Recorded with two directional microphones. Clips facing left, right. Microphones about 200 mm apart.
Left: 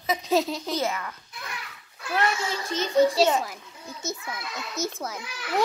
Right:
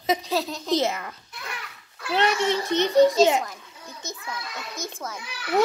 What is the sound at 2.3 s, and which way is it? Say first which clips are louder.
Speech: right 6 dB; 70° right (ahead or behind).